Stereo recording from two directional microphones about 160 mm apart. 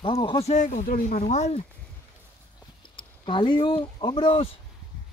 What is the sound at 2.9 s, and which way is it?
Speech, 30° left (ahead or behind).